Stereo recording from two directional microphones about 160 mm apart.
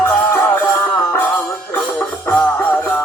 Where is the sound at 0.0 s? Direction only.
15° left (ahead or behind).